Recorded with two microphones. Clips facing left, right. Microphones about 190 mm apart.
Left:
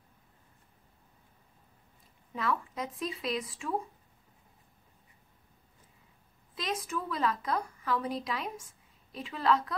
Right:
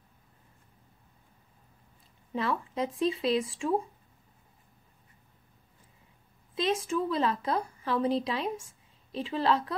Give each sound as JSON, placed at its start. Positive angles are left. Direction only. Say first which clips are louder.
{"t": 2.3, "sound": "a woman's voice", "louder": "right 3 dB", "side_deg": -30}
{"t": 6.5, "sound": "a woman's voice", "louder": "right 7 dB", "side_deg": -25}